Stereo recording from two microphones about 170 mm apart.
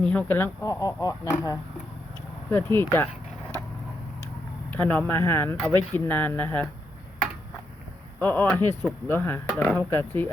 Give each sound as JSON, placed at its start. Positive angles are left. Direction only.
{"t": 0.0, "sound": "speech", "side_deg": 10}
{"t": 4.7, "sound": "speech", "side_deg": 10}
{"t": 8.2, "sound": "speech", "side_deg": 10}